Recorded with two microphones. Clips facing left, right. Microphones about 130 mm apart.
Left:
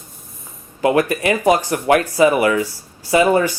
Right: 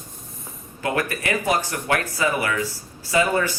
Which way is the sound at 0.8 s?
20° left (ahead or behind).